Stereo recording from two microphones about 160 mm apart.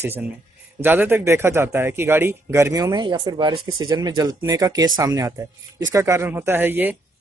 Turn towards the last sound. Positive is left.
turn(degrees=-10)  # may be behind; listen again after turning